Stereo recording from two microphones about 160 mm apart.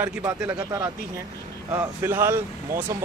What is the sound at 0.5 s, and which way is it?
A man's voice, 20° right (ahead or behind).